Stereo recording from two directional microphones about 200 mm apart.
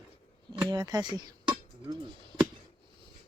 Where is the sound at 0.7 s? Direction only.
20° right (ahead or behind).